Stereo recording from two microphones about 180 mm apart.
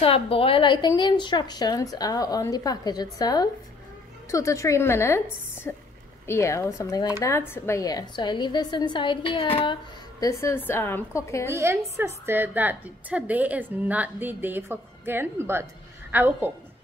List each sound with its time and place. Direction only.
0.0 s a woman's voice: 30° left (ahead or behind)
10.2 s a woman's voice: 15° left (ahead or behind)
11.4 s a woman's voice: 15° right (ahead or behind)